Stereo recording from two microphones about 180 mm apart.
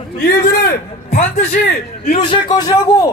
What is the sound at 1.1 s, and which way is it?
A man's voice, 40° left (ahead or behind).